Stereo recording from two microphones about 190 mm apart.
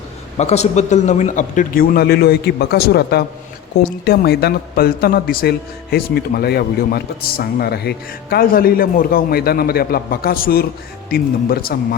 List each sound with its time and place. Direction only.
0.3 s a man's voice: 35° left (ahead or behind); by 11.9 s 50° left (ahead or behind)